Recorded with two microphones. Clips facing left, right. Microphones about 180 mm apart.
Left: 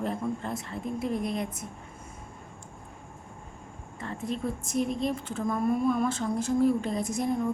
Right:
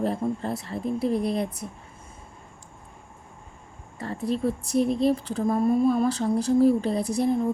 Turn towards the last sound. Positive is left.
turn(degrees=-35)  # may be behind; listen again after turning